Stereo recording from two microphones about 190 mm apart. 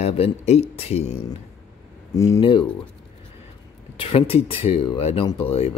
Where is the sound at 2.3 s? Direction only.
25° left (ahead or behind).